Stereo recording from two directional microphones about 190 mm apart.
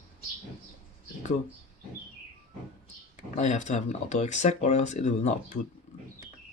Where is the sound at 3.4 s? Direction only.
40° left (ahead or behind).